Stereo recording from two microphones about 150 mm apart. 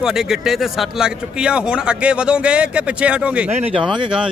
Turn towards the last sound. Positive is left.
turn(degrees=-35)  # may be behind; listen again after turning